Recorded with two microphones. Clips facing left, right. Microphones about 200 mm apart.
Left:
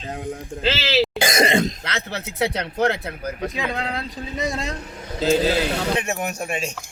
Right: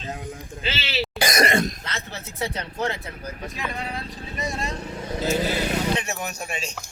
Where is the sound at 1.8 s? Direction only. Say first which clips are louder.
Left 6 dB; 75° left (ahead or behind).